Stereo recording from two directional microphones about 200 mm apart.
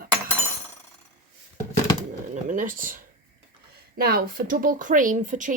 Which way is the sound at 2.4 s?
40° right (ahead or behind).